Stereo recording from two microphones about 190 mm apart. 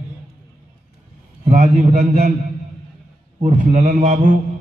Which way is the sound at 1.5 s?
40° right (ahead or behind).